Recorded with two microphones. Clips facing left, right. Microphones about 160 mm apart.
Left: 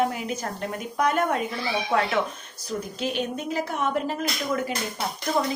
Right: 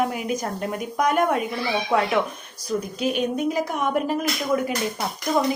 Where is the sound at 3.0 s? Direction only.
15° right (ahead or behind).